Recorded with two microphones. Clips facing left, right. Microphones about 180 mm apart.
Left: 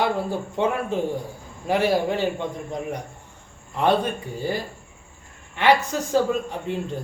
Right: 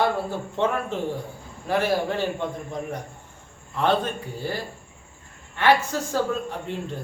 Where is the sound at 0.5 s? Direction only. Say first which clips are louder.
Left 1 dB; 15° left (ahead or behind).